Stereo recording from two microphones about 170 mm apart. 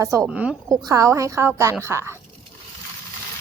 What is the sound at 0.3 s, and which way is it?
Speech, 5° right (ahead or behind).